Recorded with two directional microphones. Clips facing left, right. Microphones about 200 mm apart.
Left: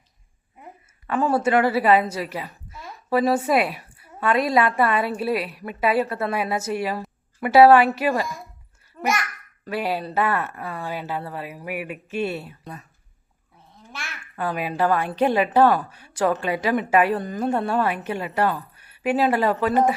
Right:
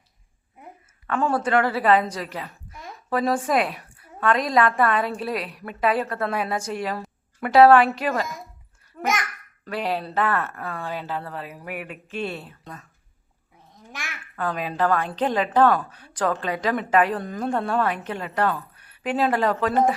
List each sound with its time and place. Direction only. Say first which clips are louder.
1.0 s a woman's voice: left 2 dB; 5° left (ahead or behind)
9.6 s a woman's voice: left 1 dB; 5° left (ahead or behind)
13.7 s babbling: even; 15° right (ahead or behind)
14.3 s a woman's voice: left 1 dB; 10° left (ahead or behind)